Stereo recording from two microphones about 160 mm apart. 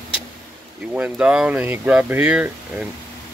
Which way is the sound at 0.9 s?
10° right (ahead or behind).